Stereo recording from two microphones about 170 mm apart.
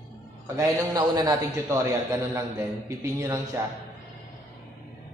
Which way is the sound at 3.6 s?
15° right (ahead or behind).